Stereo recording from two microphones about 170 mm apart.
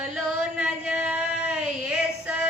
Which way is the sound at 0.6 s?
5° right (ahead or behind).